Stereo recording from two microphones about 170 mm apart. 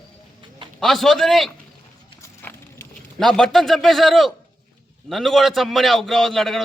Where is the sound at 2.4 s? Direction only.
15° left (ahead or behind).